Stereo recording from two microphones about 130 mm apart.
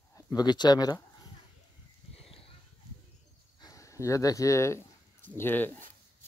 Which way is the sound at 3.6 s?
25° left (ahead or behind).